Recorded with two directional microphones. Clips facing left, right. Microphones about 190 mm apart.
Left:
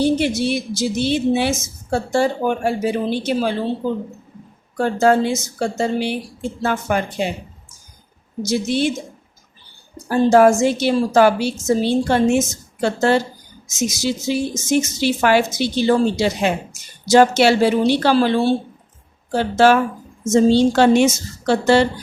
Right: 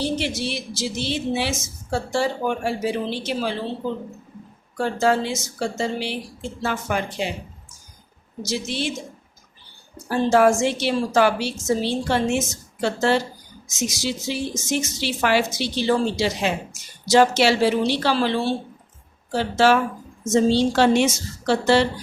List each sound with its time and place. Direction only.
0.0 s a woman's voice: 50° left (ahead or behind)
4.8 s a woman's voice: 50° left (ahead or behind)
8.4 s a woman's voice: 50° left (ahead or behind)
10.1 s a woman's voice: 40° left (ahead or behind)